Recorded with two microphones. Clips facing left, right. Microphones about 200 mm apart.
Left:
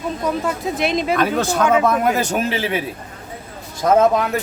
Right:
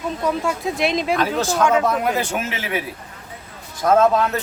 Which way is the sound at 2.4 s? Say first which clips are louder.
Left 5 dB; 30° left (ahead or behind).